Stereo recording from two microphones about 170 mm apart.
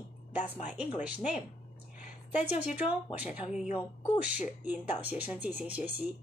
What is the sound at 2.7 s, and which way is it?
Speech, 10° right (ahead or behind).